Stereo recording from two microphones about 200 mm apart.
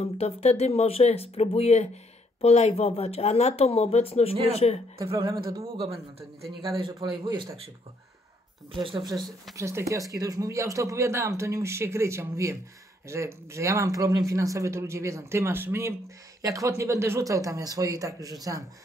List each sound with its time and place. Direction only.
0.0 s speech: 30° left (ahead or behind)
5.1 s speech: 25° right (ahead or behind)
8.7 s speech: 25° right (ahead or behind)
9.0 s speech: centre (ahead or behind)
9.6 s speech: 15° right (ahead or behind)